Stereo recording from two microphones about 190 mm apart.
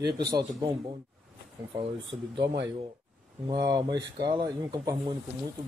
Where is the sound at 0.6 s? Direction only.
25° right (ahead or behind).